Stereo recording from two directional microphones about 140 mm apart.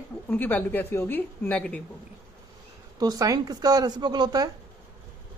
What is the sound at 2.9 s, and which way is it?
Speech, 25° right (ahead or behind).